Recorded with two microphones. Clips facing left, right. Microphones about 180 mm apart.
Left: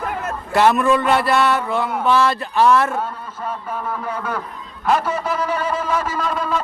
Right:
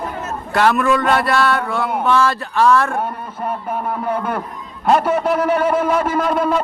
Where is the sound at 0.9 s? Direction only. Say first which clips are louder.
Even; 15° left (ahead or behind).